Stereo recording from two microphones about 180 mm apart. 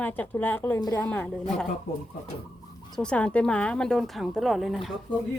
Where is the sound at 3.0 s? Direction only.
5° left (ahead or behind).